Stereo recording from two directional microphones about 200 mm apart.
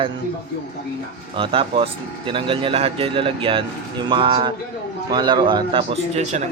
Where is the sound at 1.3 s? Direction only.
25° right (ahead or behind).